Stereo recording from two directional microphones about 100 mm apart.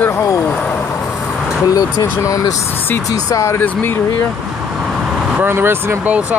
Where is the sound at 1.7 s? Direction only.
35° left (ahead or behind).